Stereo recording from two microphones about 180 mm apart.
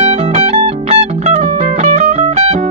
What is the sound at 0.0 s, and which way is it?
Music, 35° right (ahead or behind).